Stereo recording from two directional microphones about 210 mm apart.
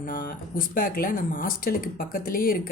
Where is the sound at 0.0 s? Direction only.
40° left (ahead or behind).